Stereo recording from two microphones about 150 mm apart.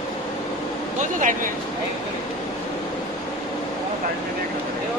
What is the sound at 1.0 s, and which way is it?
Speech, 55° right (ahead or behind).